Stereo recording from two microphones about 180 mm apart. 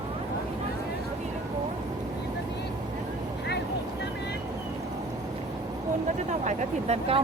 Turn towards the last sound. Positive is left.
turn(degrees=-35)  # may be behind; listen again after turning